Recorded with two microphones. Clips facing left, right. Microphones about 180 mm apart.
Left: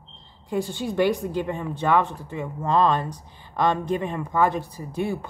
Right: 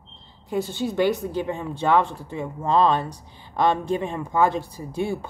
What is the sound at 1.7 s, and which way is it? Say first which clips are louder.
Speech: right 1 dB; 25° right (ahead or behind).